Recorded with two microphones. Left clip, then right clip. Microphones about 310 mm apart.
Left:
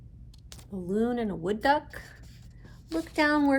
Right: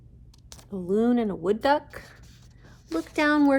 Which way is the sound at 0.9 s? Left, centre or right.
Right.